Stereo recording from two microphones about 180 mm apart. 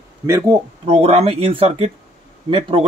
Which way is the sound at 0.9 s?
35° right (ahead or behind).